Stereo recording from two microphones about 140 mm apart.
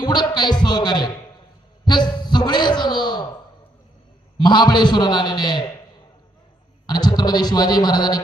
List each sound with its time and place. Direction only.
0.0 s a man's voice: 30° left (ahead or behind)
1.8 s a sound: 30° left (ahead or behind)
4.4 s a man's voice: 30° left (ahead or behind)
6.8 s a man's voice: 30° left (ahead or behind)